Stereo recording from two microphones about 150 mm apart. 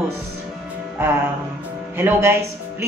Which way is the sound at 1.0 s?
15° right (ahead or behind).